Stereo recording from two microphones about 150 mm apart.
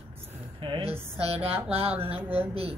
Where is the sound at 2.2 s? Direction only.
15° right (ahead or behind).